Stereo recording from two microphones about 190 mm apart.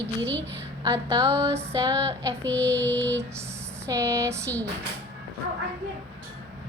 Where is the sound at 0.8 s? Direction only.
20° right (ahead or behind).